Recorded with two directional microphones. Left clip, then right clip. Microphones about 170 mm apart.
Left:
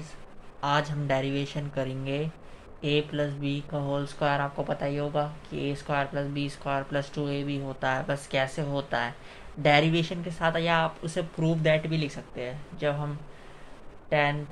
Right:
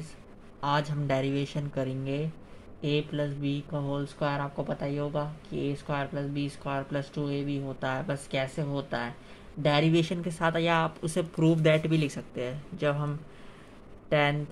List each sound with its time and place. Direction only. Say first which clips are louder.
0.6 s speech: left 2 dB; 30° right (ahead or behind)
9.9 s speech: right 2 dB; 40° right (ahead or behind)